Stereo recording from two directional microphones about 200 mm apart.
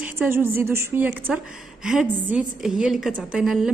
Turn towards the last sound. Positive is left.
turn(degrees=-5)  # may be behind; listen again after turning